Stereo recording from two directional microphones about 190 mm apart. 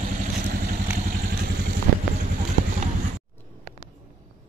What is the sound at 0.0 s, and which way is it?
Vehicle, 45° right (ahead or behind).